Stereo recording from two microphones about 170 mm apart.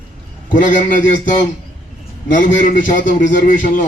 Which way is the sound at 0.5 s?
50° left (ahead or behind).